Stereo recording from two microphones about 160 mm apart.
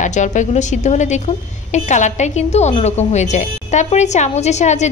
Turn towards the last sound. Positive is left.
turn(degrees=45)  # may be behind; listen again after turning